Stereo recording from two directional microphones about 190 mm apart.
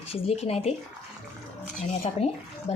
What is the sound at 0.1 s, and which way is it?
Speech, 30° left (ahead or behind).